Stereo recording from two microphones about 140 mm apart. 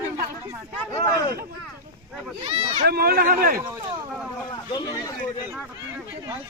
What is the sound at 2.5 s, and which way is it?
Speech, 50° right (ahead or behind).